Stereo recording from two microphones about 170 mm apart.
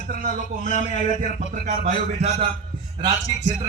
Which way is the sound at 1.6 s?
40° right (ahead or behind).